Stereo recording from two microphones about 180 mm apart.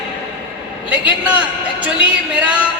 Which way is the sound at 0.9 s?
5° right (ahead or behind).